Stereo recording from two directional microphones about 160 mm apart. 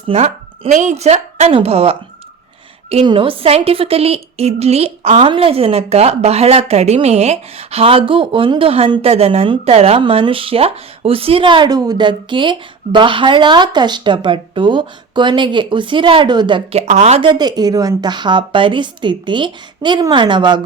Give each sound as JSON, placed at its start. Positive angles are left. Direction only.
{"t": 0.1, "sound": "a woman's voice", "side_deg": -40}
{"t": 16.8, "sound": "a woman's voice", "side_deg": -45}